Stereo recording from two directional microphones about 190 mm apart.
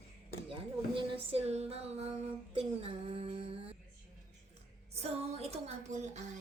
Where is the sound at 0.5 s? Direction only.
30° right (ahead or behind).